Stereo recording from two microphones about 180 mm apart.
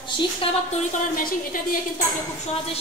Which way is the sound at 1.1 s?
50° left (ahead or behind).